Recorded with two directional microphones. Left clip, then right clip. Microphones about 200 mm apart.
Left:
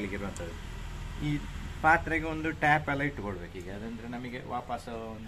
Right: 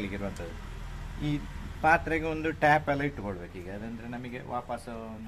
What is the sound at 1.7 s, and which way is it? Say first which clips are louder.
A man's voice: even; 35° right (ahead or behind).